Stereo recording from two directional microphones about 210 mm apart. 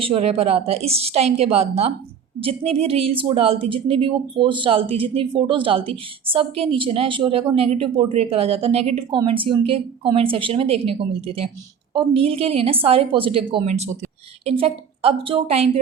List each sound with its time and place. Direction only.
0.0 s speech: 30° right (ahead or behind)